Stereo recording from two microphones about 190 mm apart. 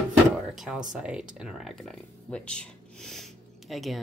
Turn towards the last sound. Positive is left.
turn(degrees=0)  # may be behind; listen again after turning